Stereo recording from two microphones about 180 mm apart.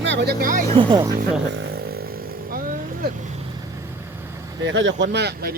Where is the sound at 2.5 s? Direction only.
55° right (ahead or behind).